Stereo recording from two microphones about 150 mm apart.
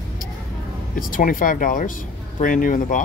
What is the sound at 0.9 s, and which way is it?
Speech, 65° left (ahead or behind).